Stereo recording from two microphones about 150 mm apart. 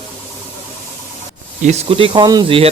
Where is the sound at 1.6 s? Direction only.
50° right (ahead or behind).